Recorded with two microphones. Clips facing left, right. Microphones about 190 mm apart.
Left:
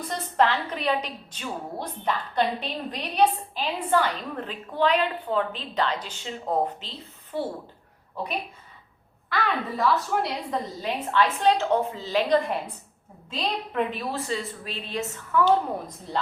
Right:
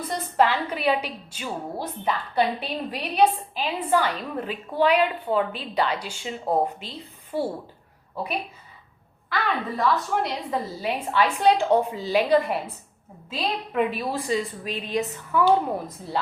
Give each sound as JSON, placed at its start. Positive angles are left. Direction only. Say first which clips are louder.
{"t": 0.3, "sound": "a woman's voice", "louder": "right 1 dB", "side_deg": -10}